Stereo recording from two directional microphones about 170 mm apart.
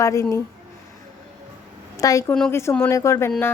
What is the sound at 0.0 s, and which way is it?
Speech, 20° left (ahead or behind).